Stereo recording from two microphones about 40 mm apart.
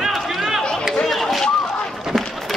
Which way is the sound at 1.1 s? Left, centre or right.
Centre.